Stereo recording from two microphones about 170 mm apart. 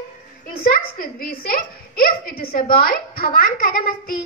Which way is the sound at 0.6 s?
60° left (ahead or behind).